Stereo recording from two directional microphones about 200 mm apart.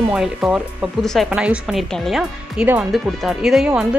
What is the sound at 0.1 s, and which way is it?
Speech, 5° right (ahead or behind).